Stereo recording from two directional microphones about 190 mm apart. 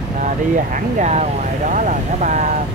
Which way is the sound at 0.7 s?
35° right (ahead or behind).